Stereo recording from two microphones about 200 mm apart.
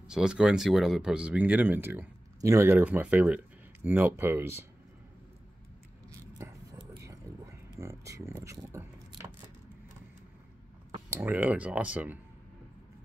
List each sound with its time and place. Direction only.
0.1 s speech: 5° right (ahead or behind)
6.3 s whispering: 20° right (ahead or behind)
7.8 s a sound: 15° right (ahead or behind)
8.5 s keys jangling: 15° right (ahead or behind)
11.1 s speech: 10° right (ahead or behind)